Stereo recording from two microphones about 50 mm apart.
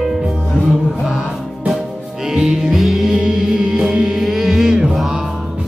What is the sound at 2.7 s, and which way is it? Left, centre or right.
Music, centre.